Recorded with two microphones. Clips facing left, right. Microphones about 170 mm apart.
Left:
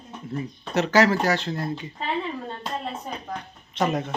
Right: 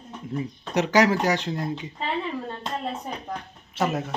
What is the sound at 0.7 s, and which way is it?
Speech, 15° right (ahead or behind).